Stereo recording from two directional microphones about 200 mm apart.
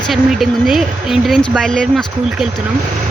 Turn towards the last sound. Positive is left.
turn(degrees=5)  # may be behind; listen again after turning